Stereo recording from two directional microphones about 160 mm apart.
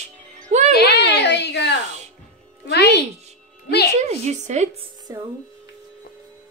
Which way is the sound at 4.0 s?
45° right (ahead or behind).